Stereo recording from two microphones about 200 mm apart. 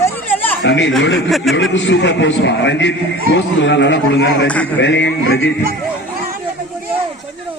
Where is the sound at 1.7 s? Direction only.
65° left (ahead or behind).